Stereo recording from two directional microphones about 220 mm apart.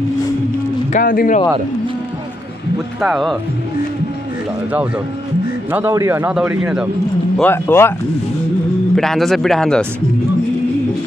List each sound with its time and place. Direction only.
0.9 s speech: 40° left (ahead or behind)
3.0 s speech: centre (ahead or behind)
5.7 s speech: 10° right (ahead or behind)
7.3 s speech: 10° left (ahead or behind)
8.9 s speech: centre (ahead or behind)